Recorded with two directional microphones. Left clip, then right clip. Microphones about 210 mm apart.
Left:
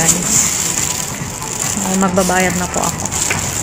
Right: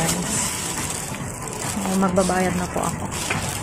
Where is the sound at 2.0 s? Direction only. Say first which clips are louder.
Left 6 dB; 20° left (ahead or behind).